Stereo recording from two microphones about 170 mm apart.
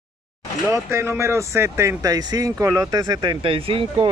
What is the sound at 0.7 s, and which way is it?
Speech, 15° right (ahead or behind).